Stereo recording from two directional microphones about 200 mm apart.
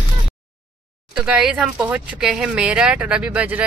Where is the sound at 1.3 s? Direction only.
5° right (ahead or behind).